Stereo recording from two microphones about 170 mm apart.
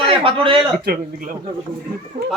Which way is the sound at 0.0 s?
30° right (ahead or behind).